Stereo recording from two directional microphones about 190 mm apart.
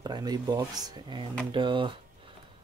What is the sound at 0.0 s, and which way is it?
Speech, 20° right (ahead or behind).